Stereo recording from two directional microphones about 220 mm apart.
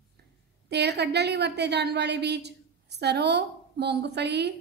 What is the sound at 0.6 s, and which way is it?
A woman's voice, 50° right (ahead or behind).